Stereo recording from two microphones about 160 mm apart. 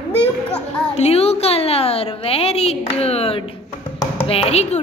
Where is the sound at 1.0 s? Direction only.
40° left (ahead or behind).